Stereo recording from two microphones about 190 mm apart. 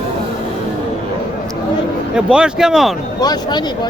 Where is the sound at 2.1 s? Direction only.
5° right (ahead or behind).